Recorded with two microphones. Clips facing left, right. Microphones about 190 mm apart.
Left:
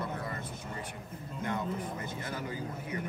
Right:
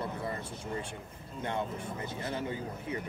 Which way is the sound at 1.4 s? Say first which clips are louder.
Even; 25° right (ahead or behind).